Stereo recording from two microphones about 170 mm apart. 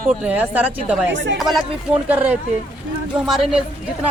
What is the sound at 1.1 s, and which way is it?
Speech, 90° right.